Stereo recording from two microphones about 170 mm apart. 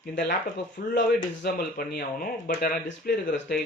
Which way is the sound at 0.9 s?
70° left (ahead or behind).